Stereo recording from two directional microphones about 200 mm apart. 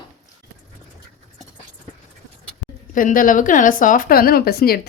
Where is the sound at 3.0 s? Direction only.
45° left (ahead or behind).